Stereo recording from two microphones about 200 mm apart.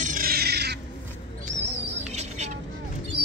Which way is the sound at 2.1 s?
35° right (ahead or behind).